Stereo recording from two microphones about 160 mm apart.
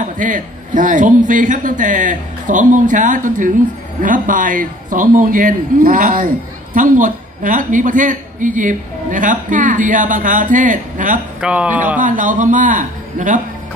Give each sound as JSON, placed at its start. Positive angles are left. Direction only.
{"t": 0.0, "sound": "a man's voice", "side_deg": -55}
{"t": 11.4, "sound": "speech", "side_deg": -10}
{"t": 12.0, "sound": "a man's voice", "side_deg": -55}